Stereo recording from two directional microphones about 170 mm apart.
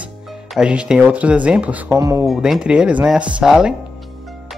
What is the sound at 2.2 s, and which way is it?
Speech, centre (ahead or behind).